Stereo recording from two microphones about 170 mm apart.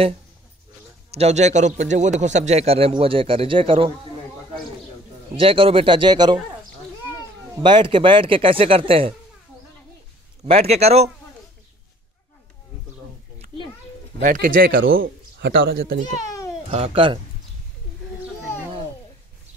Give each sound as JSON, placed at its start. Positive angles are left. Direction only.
{"t": 1.1, "sound": "a man's voice", "side_deg": -40}
{"t": 5.3, "sound": "a man's voice", "side_deg": -30}
{"t": 7.6, "sound": "a man's voice", "side_deg": -30}
{"t": 10.7, "sound": "a man's voice", "side_deg": -40}
{"t": 14.2, "sound": "speech", "side_deg": -55}
{"t": 14.7, "sound": "speech", "side_deg": -65}
{"t": 16.3, "sound": "a sound", "side_deg": 20}
{"t": 16.6, "sound": "a man's voice", "side_deg": -35}